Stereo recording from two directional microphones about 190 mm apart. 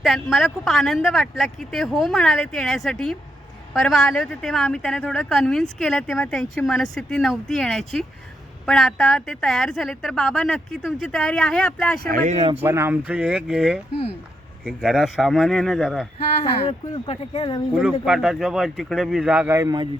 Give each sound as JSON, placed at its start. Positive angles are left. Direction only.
{"t": 0.0, "sound": "a woman's voice", "side_deg": 0}
{"t": 12.1, "sound": "a man's voice", "side_deg": -40}
{"t": 12.5, "sound": "a woman's voice", "side_deg": -15}
{"t": 16.1, "sound": "speech", "side_deg": 30}
{"t": 18.0, "sound": "a woman's voice", "side_deg": 0}
{"t": 19.5, "sound": "a man's voice", "side_deg": -20}